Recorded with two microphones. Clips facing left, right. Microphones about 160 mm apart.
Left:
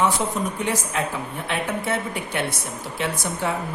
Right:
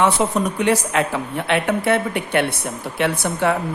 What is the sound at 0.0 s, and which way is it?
A woman's voice, 75° right (ahead or behind).